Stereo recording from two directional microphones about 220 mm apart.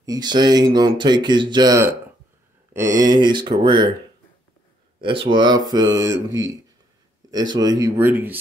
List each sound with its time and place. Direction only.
0.0 s speech: 15° right (ahead or behind)
5.0 s speech: 25° right (ahead or behind)
7.2 s speech: 20° right (ahead or behind)